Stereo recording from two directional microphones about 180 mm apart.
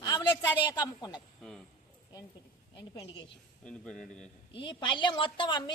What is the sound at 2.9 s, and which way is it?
Speech, 20° left (ahead or behind).